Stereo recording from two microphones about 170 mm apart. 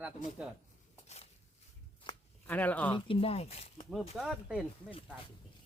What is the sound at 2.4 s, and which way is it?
Speech, 10° left (ahead or behind).